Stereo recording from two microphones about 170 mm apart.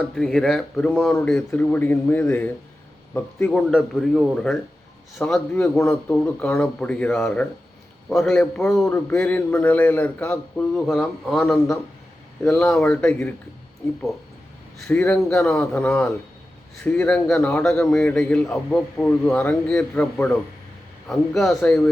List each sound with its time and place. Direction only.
0.1 s a man's voice: 5° left (ahead or behind)
3.7 s a man's voice: centre (ahead or behind)
14.8 s a man's voice: 5° left (ahead or behind)
21.6 s speech: 10° left (ahead or behind)